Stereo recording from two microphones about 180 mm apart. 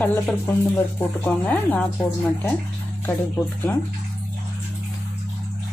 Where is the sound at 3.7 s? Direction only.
10° left (ahead or behind).